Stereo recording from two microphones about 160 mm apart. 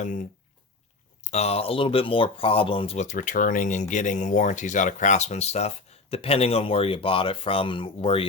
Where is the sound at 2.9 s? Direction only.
50° left (ahead or behind).